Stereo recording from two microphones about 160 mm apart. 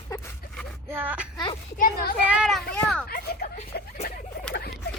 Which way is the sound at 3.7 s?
75° left (ahead or behind).